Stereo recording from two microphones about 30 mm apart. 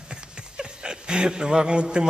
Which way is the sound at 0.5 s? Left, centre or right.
Right.